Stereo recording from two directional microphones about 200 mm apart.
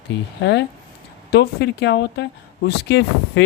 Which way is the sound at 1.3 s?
55° left (ahead or behind).